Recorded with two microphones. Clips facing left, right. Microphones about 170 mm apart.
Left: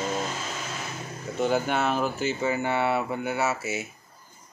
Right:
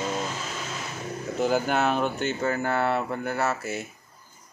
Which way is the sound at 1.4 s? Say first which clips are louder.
Right 1 dB; centre (ahead or behind).